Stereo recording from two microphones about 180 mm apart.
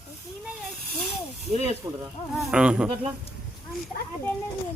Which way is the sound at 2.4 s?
Centre (ahead or behind).